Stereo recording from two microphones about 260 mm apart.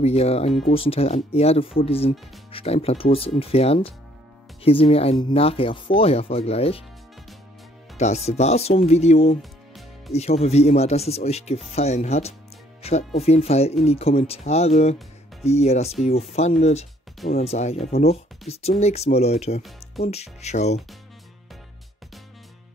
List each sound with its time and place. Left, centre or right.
0.0 s speech: left
8.3 s speech: left
9.4 s music: centre
10.1 s speech: left